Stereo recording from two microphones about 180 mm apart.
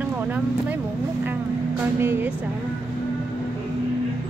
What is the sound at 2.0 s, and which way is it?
Speech, 10° right (ahead or behind).